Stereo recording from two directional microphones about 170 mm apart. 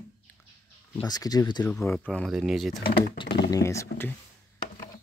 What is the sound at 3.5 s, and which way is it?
Speech, 15° left (ahead or behind).